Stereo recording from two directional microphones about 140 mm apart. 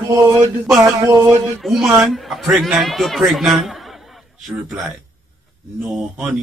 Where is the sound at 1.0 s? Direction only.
25° right (ahead or behind).